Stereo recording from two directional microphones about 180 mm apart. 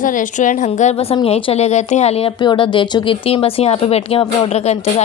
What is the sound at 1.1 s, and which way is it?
Speech, 30° left (ahead or behind).